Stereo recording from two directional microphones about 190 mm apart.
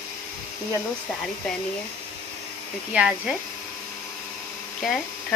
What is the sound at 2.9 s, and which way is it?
Speech, 5° right (ahead or behind).